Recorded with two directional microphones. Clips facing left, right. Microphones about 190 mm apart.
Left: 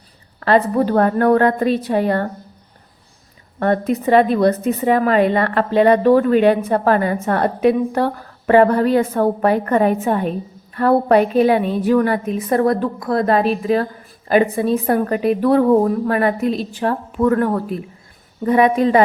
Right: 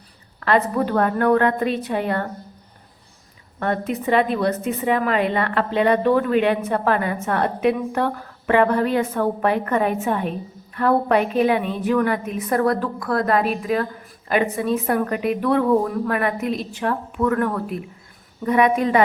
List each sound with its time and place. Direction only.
0.3 s a woman's voice: 35° left (ahead or behind)
3.6 s a woman's voice: 40° left (ahead or behind)